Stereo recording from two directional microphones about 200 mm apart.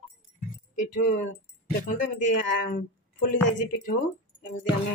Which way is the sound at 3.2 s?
40° left (ahead or behind).